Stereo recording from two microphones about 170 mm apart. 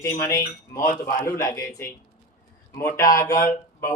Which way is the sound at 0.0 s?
15° left (ahead or behind).